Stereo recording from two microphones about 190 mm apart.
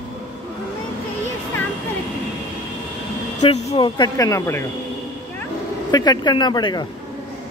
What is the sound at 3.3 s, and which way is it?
Speech, 35° left (ahead or behind).